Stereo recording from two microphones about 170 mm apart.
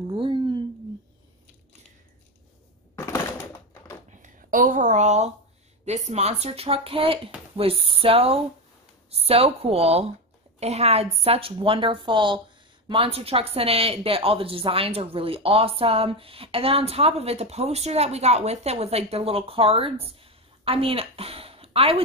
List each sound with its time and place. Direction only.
0.0 s a sound: 30° right (ahead or behind)
3.1 s typewriter: 15° left (ahead or behind)
4.2 s a woman's voice: 50° right (ahead or behind); by 22.0 s 35° right (ahead or behind)